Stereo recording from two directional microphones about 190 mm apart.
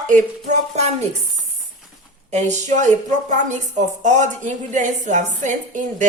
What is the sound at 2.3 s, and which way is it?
A woman's voice, 35° right (ahead or behind).